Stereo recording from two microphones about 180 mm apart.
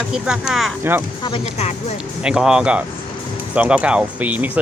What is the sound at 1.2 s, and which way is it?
Speech, 35° left (ahead or behind).